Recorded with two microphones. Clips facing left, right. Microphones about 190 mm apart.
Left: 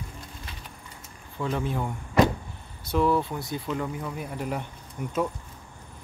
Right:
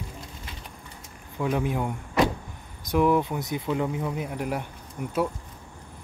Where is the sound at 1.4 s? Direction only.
15° right (ahead or behind).